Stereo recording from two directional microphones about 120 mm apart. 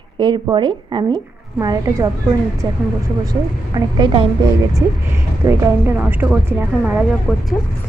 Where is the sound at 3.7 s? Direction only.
35° right (ahead or behind).